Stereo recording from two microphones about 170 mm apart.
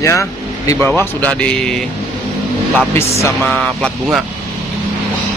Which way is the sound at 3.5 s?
Centre (ahead or behind).